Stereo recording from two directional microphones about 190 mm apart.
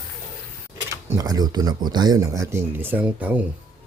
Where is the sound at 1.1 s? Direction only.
15° right (ahead or behind).